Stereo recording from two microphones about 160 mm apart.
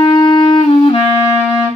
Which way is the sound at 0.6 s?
40° left (ahead or behind).